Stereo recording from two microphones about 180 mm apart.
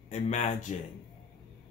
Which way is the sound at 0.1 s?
40° left (ahead or behind).